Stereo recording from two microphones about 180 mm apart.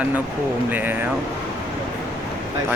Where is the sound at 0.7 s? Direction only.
10° right (ahead or behind).